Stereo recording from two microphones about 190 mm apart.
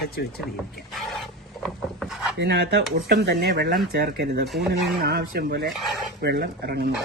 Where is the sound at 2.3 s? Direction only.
60° right (ahead or behind).